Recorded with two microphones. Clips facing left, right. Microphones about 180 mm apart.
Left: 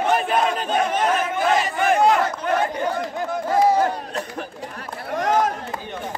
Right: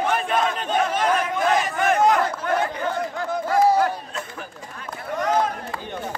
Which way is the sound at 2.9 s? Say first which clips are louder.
Left 1 dB; 15° left (ahead or behind).